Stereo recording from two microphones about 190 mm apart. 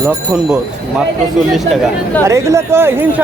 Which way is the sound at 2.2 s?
15° right (ahead or behind).